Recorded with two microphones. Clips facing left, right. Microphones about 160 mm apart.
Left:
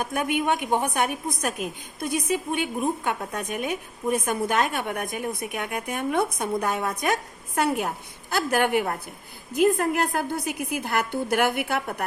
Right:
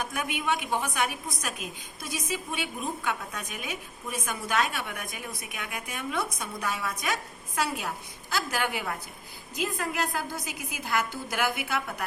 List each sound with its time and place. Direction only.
0.0 s a woman's voice: 50° left (ahead or behind)